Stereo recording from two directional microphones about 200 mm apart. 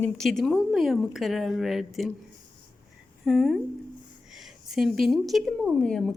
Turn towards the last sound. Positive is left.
turn(degrees=5)  # may be behind; listen again after turning